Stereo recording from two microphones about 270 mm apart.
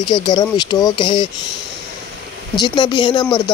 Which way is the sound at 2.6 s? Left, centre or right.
Centre.